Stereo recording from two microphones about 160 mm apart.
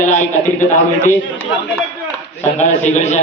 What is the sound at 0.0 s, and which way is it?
Speech, 50° left (ahead or behind).